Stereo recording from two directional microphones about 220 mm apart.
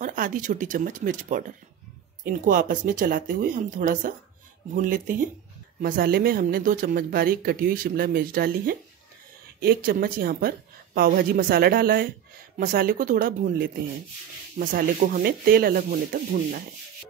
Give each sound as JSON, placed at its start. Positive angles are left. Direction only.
{"t": 0.0, "sound": "speech", "side_deg": -40}